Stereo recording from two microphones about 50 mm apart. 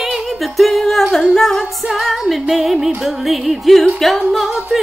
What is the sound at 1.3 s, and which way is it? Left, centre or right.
Speech, centre.